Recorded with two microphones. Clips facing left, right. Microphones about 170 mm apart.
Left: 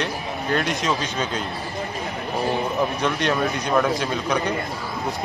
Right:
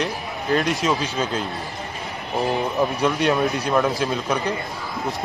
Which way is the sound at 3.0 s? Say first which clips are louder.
Right 2 dB; 5° right (ahead or behind).